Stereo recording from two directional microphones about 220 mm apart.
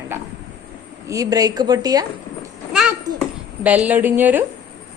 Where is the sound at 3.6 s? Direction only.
5° right (ahead or behind).